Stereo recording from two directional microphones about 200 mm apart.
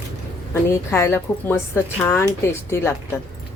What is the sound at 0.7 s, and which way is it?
A woman's voice, 15° left (ahead or behind).